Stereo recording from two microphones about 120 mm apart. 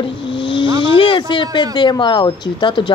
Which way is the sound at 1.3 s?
40° left (ahead or behind).